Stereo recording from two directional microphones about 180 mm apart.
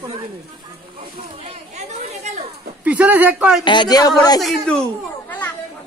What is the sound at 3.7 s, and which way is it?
Speech, 25° left (ahead or behind).